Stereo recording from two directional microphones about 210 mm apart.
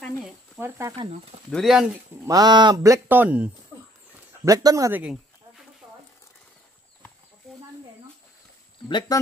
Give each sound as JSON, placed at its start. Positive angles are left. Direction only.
{"t": 0.2, "sound": "speech", "side_deg": -10}
{"t": 1.5, "sound": "speech", "side_deg": 0}
{"t": 2.2, "sound": "speech", "side_deg": -20}
{"t": 5.8, "sound": "a sound", "side_deg": -15}
{"t": 8.8, "sound": "speech", "side_deg": 20}